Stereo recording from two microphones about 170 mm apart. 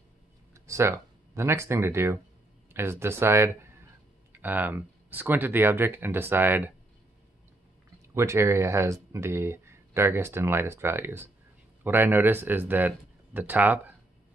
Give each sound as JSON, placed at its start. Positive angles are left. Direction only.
{"t": 0.7, "sound": "speech", "side_deg": -15}
{"t": 8.1, "sound": "speech", "side_deg": -15}